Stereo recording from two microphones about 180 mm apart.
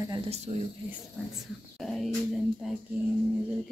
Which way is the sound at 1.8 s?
Centre (ahead or behind).